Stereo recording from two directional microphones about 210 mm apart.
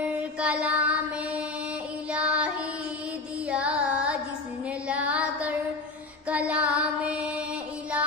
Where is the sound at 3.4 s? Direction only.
5° right (ahead or behind).